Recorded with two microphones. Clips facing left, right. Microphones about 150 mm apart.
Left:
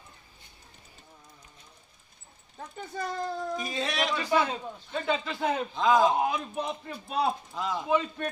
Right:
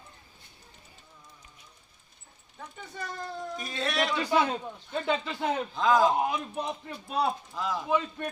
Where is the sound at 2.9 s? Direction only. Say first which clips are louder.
Left 6 dB; 40° left (ahead or behind).